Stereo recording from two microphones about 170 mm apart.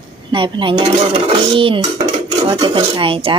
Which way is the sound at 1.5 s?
30° right (ahead or behind).